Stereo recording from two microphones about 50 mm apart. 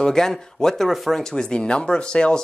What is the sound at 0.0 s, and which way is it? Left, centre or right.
Speech, centre.